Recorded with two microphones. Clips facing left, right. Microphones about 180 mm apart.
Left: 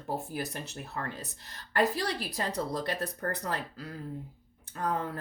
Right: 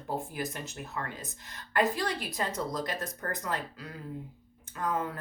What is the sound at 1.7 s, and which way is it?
A woman's voice, 40° left (ahead or behind).